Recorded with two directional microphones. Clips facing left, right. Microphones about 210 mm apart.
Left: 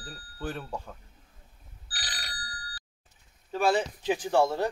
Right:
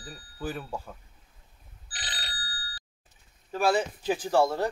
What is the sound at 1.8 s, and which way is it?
Telephone bell ringing, 25° right (ahead or behind).